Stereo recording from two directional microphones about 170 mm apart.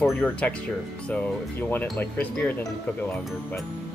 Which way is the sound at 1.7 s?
10° left (ahead or behind).